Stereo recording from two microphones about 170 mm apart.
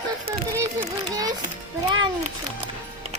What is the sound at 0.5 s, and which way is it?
Music, 20° right (ahead or behind).